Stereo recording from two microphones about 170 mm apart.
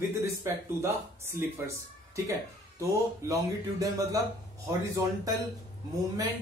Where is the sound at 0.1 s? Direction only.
15° right (ahead or behind).